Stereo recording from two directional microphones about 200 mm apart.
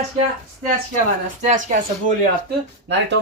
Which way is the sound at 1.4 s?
40° right (ahead or behind).